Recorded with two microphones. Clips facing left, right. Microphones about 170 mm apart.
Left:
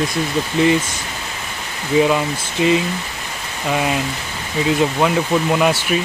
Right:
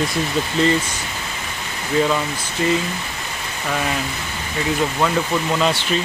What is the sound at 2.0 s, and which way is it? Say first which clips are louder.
Speech: left 3 dB; 15° left (ahead or behind).